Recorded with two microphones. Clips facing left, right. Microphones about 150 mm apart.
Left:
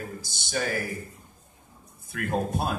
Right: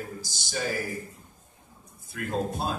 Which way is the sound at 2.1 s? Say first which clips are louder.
Left 2 dB; 60° left (ahead or behind).